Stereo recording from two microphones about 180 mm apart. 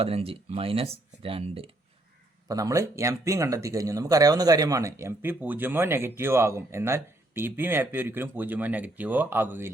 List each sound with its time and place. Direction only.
0.0 s speech: 35° right (ahead or behind)
2.5 s speech: 20° right (ahead or behind)